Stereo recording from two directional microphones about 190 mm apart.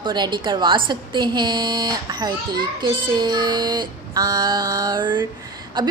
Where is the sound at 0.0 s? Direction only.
25° right (ahead or behind).